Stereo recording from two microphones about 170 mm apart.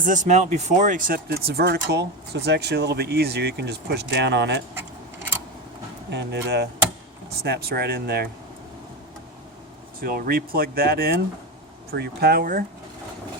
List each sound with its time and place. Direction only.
0.0 s speech: 50° right (ahead or behind); by 4.6 s 90° right
6.1 s speech: 85° right
10.0 s speech: 60° right (ahead or behind)